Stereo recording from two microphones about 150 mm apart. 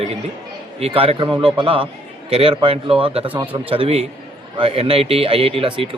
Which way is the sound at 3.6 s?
40° right (ahead or behind).